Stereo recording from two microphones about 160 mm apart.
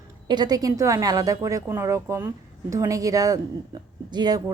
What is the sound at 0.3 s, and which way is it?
A woman's voice, 25° right (ahead or behind).